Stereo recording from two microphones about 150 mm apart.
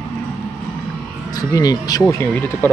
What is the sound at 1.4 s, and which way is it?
Speech, 25° left (ahead or behind).